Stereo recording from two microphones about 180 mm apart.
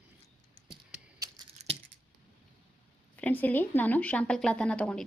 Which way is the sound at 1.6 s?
40° right (ahead or behind).